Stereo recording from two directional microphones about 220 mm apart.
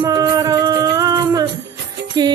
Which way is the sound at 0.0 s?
15° right (ahead or behind).